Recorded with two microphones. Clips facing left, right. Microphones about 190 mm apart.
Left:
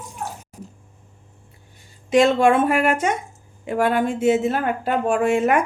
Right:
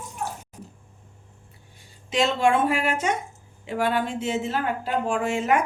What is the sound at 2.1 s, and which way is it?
Speech, 55° left (ahead or behind).